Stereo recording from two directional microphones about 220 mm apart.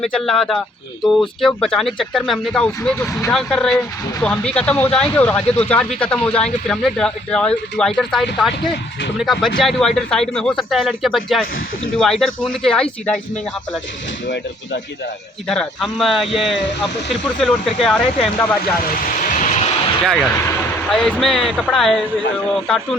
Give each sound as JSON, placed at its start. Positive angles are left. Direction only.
{"t": 0.0, "sound": "speech", "side_deg": 0}
{"t": 3.1, "sound": "speech", "side_deg": 15}
{"t": 3.3, "sound": "speech", "side_deg": 0}
{"t": 15.4, "sound": "speech", "side_deg": 0}
{"t": 18.9, "sound": "vehicle", "side_deg": 40}
{"t": 20.9, "sound": "speech", "side_deg": 0}